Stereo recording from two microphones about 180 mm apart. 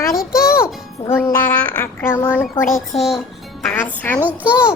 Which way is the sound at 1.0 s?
10° left (ahead or behind).